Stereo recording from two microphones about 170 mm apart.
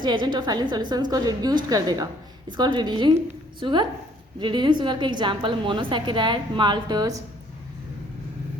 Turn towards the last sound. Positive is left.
turn(degrees=-25)  # may be behind; listen again after turning